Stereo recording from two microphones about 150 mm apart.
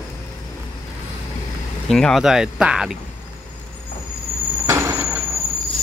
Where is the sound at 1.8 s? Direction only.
5° left (ahead or behind).